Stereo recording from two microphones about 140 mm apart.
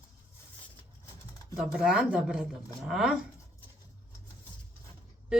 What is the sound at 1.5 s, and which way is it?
Speech, 5° right (ahead or behind).